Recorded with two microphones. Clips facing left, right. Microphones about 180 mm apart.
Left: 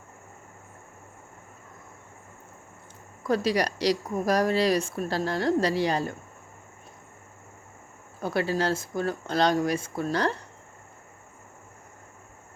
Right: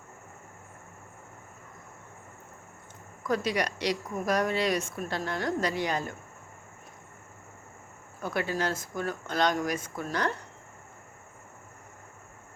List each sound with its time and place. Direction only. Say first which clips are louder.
3.2 s speech: left 4 dB; 30° left (ahead or behind)
8.2 s speech: left 4 dB; 30° left (ahead or behind)